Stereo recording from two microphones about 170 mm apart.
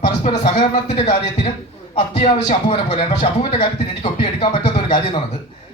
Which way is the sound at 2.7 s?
40° left (ahead or behind).